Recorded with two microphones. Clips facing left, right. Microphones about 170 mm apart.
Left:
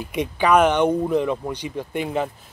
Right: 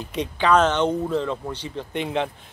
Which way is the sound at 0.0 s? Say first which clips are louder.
Left 2 dB; 10° left (ahead or behind).